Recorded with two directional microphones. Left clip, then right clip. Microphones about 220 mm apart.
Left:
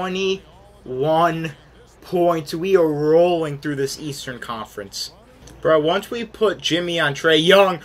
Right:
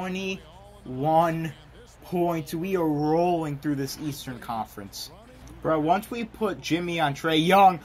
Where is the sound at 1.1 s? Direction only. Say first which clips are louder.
Left 3 dB; 45° right (ahead or behind).